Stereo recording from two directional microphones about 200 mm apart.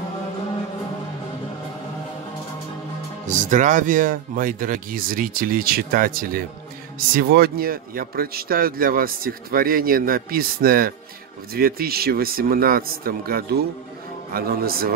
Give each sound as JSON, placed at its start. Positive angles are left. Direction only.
{"t": 3.3, "sound": "a man's voice", "side_deg": -40}